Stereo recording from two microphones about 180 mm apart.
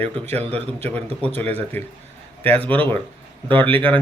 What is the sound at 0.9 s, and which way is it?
A man's voice, 10° left (ahead or behind).